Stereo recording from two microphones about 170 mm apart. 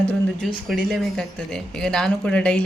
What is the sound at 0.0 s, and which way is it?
Speech, 5° left (ahead or behind).